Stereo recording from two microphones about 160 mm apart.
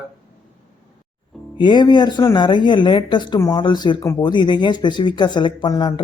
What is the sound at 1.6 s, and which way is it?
Speech, 30° left (ahead or behind).